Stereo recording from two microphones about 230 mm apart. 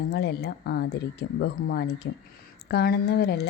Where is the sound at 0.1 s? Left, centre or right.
Left.